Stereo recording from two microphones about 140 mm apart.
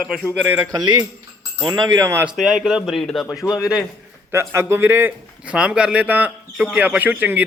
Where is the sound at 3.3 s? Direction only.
25° left (ahead or behind).